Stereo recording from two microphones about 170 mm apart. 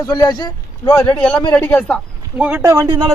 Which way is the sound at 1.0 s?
5° left (ahead or behind).